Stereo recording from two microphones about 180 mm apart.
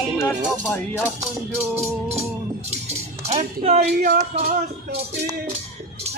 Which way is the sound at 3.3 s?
35° right (ahead or behind).